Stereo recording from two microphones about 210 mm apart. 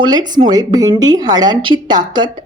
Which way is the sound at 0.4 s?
20° right (ahead or behind).